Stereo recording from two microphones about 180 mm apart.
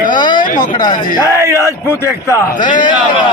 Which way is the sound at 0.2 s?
25° left (ahead or behind).